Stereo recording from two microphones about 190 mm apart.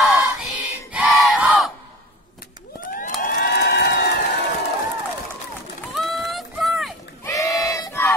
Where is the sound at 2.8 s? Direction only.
45° left (ahead or behind).